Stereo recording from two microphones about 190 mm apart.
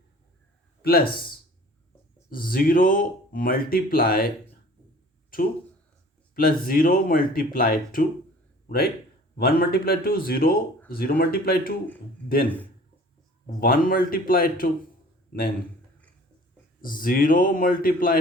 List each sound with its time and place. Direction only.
0.8 s speech: 55° left (ahead or behind)
5.3 s a man's voice: 50° left (ahead or behind)
13.6 s speech: 50° left (ahead or behind)
16.8 s speech: 50° left (ahead or behind)